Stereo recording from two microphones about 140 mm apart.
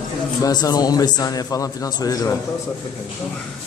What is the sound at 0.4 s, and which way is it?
A man's voice, 30° left (ahead or behind).